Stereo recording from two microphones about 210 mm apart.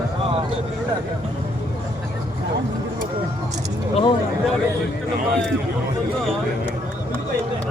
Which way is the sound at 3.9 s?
25° left (ahead or behind).